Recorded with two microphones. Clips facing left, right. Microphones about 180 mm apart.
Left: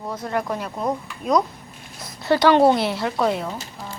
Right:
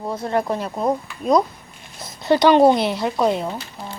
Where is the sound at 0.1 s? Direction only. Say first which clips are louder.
Right 3 dB; 30° right (ahead or behind).